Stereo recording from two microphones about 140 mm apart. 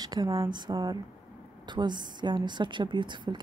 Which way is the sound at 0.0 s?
25° right (ahead or behind).